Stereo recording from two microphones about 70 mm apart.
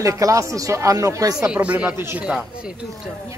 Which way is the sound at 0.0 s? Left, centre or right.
Right.